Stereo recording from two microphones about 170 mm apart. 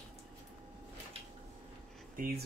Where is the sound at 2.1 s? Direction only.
60° right (ahead or behind).